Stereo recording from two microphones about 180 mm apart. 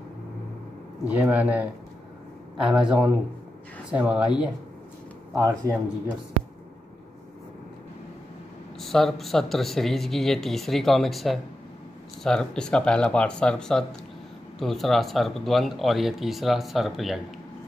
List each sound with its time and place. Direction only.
1.0 s speech: 10° right (ahead or behind)
5.3 s speech: 15° right (ahead or behind)
8.7 s speech: centre (ahead or behind)